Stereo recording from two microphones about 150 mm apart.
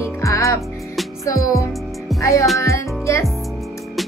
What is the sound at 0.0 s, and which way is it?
Music, 20° left (ahead or behind).